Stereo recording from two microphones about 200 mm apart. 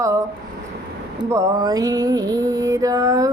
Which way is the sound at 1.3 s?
15° right (ahead or behind).